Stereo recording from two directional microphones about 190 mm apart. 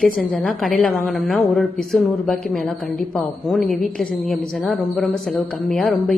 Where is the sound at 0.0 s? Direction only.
Centre (ahead or behind).